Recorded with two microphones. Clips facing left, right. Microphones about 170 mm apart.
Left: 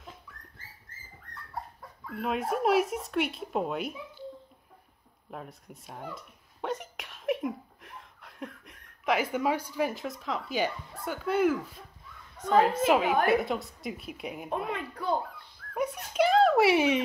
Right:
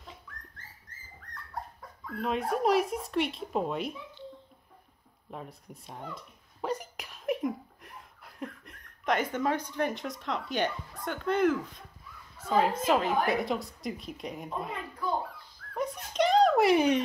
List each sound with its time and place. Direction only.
1.3 s speech: 5° left (ahead or behind)
5.3 s a sound: centre (ahead or behind)
12.4 s a woman's voice: 5° right (ahead or behind)
12.8 s a woman's voice: 10° left (ahead or behind)
14.5 s a child's voice: 65° left (ahead or behind)
15.7 s a sound: 10° left (ahead or behind)